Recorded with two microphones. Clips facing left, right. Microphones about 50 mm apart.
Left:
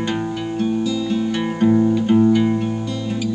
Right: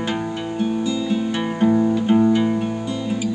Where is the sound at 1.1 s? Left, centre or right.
Centre.